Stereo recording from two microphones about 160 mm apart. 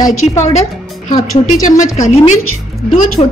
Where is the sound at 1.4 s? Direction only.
55° left (ahead or behind).